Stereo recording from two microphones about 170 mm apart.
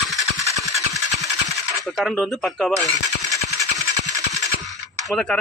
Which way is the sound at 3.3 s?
20° right (ahead or behind).